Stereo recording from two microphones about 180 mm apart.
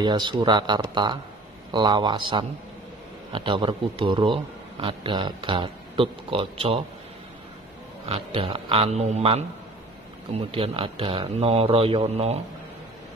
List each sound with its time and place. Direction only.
0.0 s speech: 25° right (ahead or behind)
8.1 s a man's voice: 30° right (ahead or behind)